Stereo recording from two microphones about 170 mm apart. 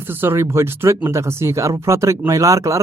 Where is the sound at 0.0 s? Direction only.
15° right (ahead or behind).